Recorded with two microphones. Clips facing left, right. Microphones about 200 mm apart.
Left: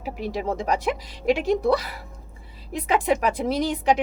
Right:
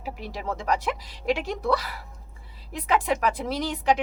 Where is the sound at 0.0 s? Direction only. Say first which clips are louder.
Left 6 dB; 15° left (ahead or behind).